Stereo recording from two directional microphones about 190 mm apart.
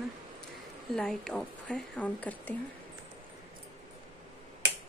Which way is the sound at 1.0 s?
5° left (ahead or behind).